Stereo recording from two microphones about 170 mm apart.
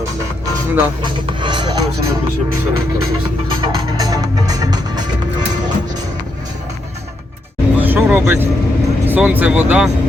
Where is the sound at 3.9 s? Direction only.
20° right (ahead or behind).